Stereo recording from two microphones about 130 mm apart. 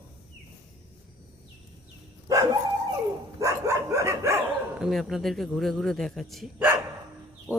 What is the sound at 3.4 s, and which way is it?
Dog, 20° right (ahead or behind).